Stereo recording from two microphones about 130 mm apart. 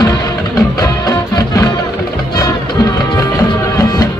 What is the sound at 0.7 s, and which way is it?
Music, 30° left (ahead or behind).